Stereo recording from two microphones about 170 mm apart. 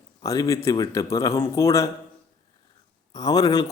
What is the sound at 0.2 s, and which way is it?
A man's voice, 20° left (ahead or behind).